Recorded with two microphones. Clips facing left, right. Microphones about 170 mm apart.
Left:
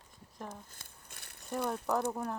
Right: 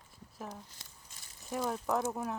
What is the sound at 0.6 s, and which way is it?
Crumpling, 55° left (ahead or behind).